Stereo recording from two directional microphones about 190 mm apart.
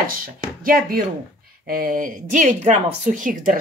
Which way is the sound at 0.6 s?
50° right (ahead or behind).